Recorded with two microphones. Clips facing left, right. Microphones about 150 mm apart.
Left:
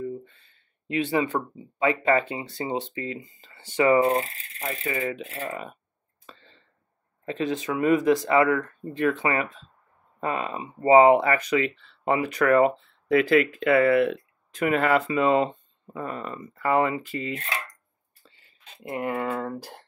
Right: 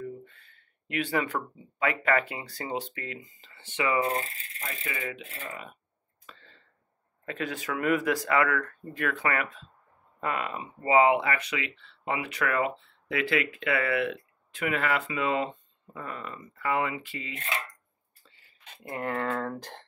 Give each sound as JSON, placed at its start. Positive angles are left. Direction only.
{"t": 0.0, "sound": "speech", "side_deg": 20}
{"t": 3.3, "sound": "speech", "side_deg": 35}
{"t": 6.2, "sound": "a sound", "side_deg": 25}
{"t": 7.2, "sound": "speech", "side_deg": 25}
{"t": 18.9, "sound": "speech", "side_deg": 10}